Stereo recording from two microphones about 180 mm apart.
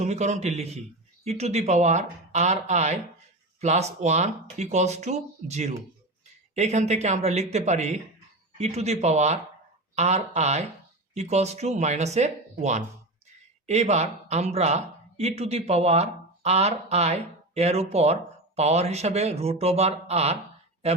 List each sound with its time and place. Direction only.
0.0 s speech: 40° right (ahead or behind)